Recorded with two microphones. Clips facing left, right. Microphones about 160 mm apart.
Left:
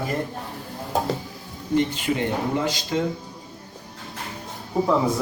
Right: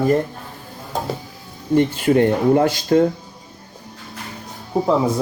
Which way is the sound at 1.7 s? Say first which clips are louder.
Right 7 dB; 50° right (ahead or behind).